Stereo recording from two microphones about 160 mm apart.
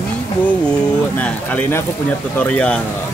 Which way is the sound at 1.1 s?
10° left (ahead or behind).